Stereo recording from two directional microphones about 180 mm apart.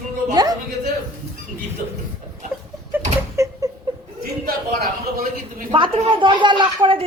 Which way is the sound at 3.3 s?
15° right (ahead or behind).